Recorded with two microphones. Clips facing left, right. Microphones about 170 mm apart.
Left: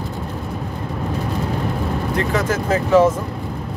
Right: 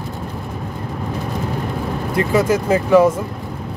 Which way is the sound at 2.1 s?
10° right (ahead or behind).